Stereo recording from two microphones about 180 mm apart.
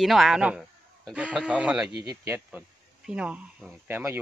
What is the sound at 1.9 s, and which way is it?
Speech, 15° right (ahead or behind).